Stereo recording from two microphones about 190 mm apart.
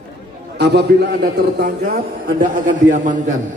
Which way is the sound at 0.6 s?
60° right (ahead or behind).